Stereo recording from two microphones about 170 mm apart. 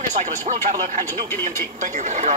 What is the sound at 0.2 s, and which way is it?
Speech, 45° right (ahead or behind).